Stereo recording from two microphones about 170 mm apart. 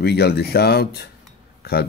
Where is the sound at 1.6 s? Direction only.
65° left (ahead or behind).